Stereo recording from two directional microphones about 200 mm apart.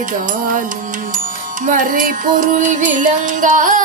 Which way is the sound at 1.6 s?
40° right (ahead or behind).